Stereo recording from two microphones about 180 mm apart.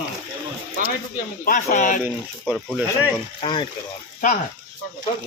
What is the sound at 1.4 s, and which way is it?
Speech, 50° left (ahead or behind).